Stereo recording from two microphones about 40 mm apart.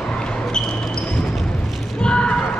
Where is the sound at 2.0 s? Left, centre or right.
Left.